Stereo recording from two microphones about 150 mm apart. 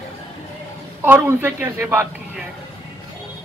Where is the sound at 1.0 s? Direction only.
15° right (ahead or behind).